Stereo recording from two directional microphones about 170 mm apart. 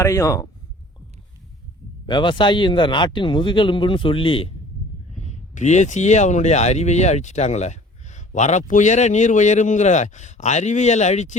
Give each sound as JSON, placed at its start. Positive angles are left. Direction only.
{"t": 0.0, "sound": "speech", "side_deg": 20}
{"t": 2.0, "sound": "speech", "side_deg": 30}
{"t": 5.1, "sound": "speech", "side_deg": 45}